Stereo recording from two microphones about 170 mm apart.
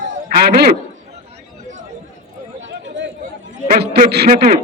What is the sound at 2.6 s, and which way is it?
Chatter, 90° right.